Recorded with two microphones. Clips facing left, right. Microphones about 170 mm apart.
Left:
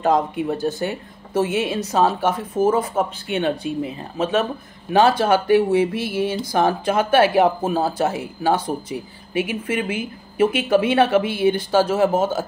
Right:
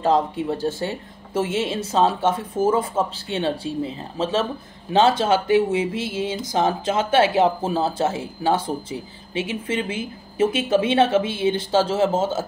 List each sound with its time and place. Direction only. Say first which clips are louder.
0.0 s speech: left 1 dB; 30° right (ahead or behind)